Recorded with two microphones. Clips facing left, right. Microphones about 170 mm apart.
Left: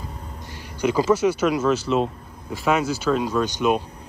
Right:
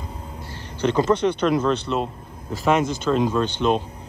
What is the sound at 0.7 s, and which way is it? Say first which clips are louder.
Speech: even; 10° left (ahead or behind).